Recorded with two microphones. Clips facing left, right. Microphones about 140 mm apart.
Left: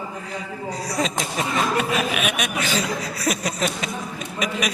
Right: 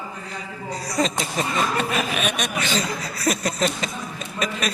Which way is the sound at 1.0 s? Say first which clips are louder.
Right 2 dB; 5° left (ahead or behind).